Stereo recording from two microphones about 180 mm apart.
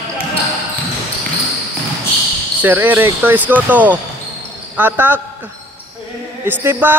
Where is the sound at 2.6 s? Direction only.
10° right (ahead or behind).